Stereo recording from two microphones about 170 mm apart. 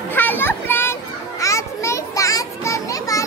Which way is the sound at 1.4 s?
15° left (ahead or behind).